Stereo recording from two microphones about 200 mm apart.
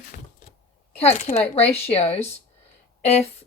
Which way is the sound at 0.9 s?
35° left (ahead or behind).